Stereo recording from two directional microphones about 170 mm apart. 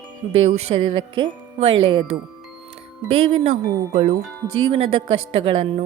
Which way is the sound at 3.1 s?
35° right (ahead or behind).